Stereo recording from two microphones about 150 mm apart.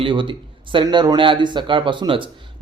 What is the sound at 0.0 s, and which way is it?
A man's voice, 35° right (ahead or behind).